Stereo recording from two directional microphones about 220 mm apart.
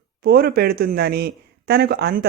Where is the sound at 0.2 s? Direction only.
45° right (ahead or behind).